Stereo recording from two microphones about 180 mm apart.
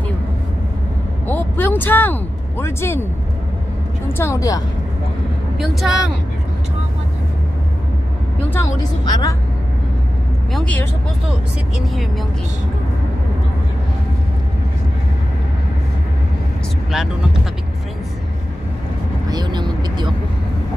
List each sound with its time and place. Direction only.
1.2 s a sound: 10° left (ahead or behind)
2.6 s speech: 15° left (ahead or behind)
4.2 s a woman's voice: 15° left (ahead or behind)
5.6 s speech: centre (ahead or behind)
8.5 s a woman's voice: 15° left (ahead or behind)
10.5 s speech: 5° left (ahead or behind)
19.2 s vehicle: 25° right (ahead or behind)